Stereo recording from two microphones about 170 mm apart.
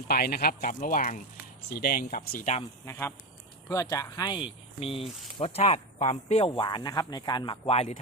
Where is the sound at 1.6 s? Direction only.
65° left (ahead or behind); by 2.6 s 45° left (ahead or behind).